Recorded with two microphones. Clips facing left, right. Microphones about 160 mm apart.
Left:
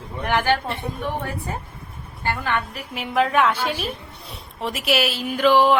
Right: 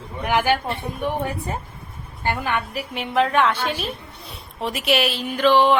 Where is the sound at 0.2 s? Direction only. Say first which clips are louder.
Right 1 dB; 10° right (ahead or behind).